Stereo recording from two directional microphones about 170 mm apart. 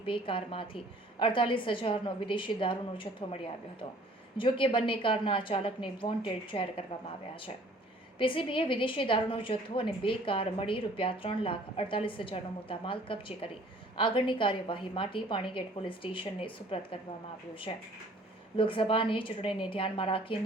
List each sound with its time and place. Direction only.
0.0 s a woman's voice: 30° left (ahead or behind)
8.2 s a woman's voice: 30° left (ahead or behind)